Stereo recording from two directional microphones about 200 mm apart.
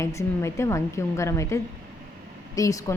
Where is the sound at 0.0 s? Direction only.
15° left (ahead or behind).